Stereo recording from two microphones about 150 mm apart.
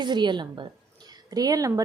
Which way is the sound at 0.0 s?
30° right (ahead or behind).